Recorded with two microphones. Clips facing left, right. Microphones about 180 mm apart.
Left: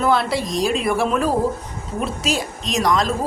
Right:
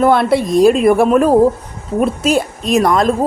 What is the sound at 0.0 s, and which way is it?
A woman's voice, 55° right (ahead or behind).